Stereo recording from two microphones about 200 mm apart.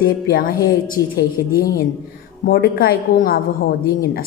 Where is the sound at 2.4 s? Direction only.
55° left (ahead or behind).